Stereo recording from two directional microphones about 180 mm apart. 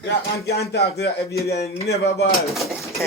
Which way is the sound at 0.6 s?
65° left (ahead or behind).